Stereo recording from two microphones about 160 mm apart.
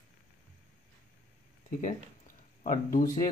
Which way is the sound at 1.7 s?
55° left (ahead or behind).